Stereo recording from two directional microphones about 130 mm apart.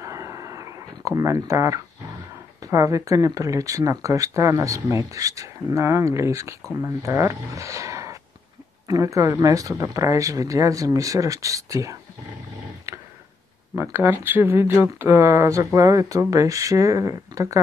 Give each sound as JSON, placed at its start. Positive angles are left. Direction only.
{"t": 0.0, "sound": "a sound", "side_deg": -25}
{"t": 2.6, "sound": "speech", "side_deg": -25}
{"t": 12.9, "sound": "tick-tock", "side_deg": -20}
{"t": 13.7, "sound": "speech", "side_deg": -15}